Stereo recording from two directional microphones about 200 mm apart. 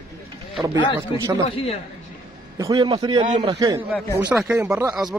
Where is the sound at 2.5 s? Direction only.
15° right (ahead or behind).